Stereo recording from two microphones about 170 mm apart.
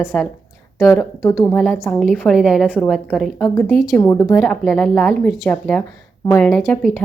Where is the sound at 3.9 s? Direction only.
20° left (ahead or behind).